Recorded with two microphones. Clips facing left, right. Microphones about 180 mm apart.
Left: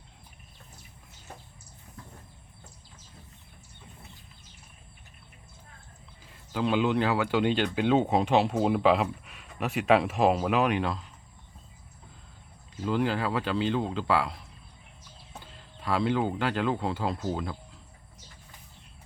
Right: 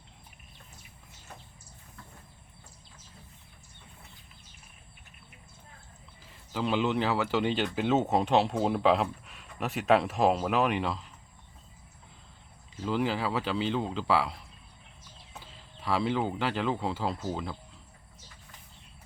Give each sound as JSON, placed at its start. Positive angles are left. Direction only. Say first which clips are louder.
{"t": 6.2, "sound": "speech", "louder": "left 3 dB", "side_deg": 0}
{"t": 12.7, "sound": "speech", "louder": "left 2 dB", "side_deg": 0}